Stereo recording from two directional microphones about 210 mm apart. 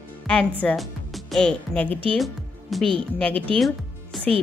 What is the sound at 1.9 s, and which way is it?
Speech, 25° right (ahead or behind).